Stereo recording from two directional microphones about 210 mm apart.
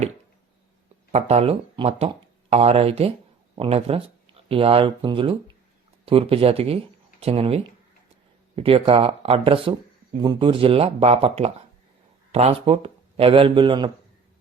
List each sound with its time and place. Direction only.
1.1 s speech: 30° right (ahead or behind)